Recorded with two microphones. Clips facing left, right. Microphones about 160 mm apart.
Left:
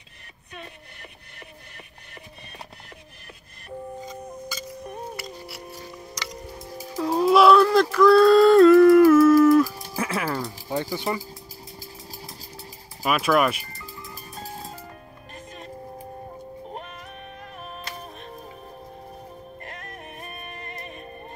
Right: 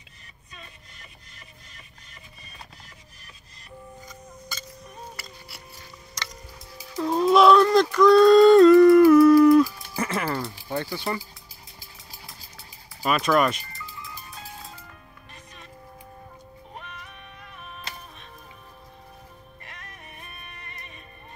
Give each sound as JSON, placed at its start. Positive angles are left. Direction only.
{"t": 6.7, "sound": "music", "side_deg": 45}
{"t": 7.0, "sound": "a sound", "side_deg": 5}
{"t": 9.9, "sound": "music", "side_deg": 5}
{"t": 10.7, "sound": "speech", "side_deg": 15}
{"t": 13.0, "sound": "speech", "side_deg": 5}
{"t": 13.7, "sound": "music", "side_deg": 45}
{"t": 16.7, "sound": "music", "side_deg": 45}
{"t": 19.6, "sound": "music", "side_deg": 50}